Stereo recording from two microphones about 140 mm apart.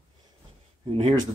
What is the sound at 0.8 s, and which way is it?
Speech, 45° right (ahead or behind).